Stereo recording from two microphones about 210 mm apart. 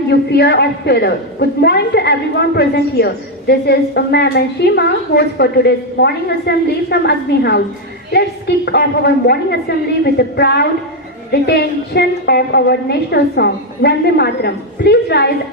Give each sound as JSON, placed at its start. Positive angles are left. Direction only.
{"t": 0.1, "sound": "a woman's voice", "side_deg": 50}